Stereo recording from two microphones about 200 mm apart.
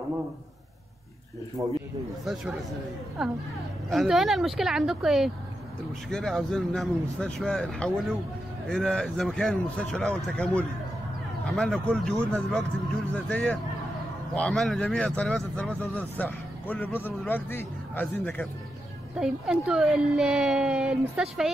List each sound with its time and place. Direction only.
1.6 s speech: 15° right (ahead or behind)
3.2 s speech: centre (ahead or behind)
19.1 s speech: 5° right (ahead or behind)